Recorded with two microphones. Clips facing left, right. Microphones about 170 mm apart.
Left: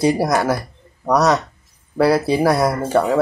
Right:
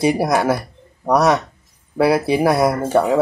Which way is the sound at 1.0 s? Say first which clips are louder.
Right 1 dB; 10° right (ahead or behind).